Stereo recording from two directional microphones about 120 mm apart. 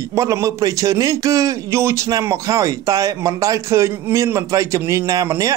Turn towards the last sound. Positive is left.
turn(degrees=-30)  # may be behind; listen again after turning